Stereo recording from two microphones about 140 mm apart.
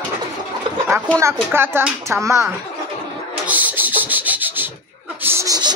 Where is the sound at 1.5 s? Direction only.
15° right (ahead or behind).